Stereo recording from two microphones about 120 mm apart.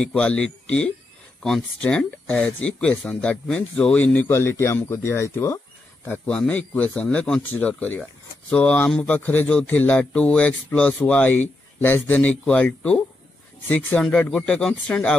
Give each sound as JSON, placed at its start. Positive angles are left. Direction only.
{"t": 0.0, "sound": "speech", "side_deg": 10}